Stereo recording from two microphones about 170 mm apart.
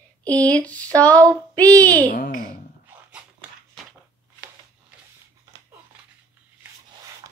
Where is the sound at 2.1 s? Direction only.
55° left (ahead or behind).